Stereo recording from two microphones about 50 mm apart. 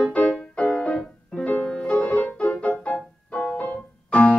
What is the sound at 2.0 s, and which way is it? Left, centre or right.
Music, left.